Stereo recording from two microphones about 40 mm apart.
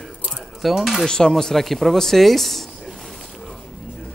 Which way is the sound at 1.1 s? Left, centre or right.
Centre.